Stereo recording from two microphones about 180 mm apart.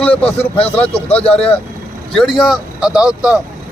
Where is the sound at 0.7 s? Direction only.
5° left (ahead or behind).